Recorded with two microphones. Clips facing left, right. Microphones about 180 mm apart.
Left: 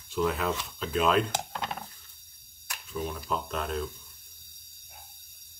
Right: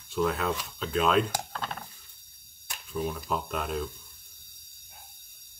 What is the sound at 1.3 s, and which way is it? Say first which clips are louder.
Speech: left 1 dB; 15° left (ahead or behind).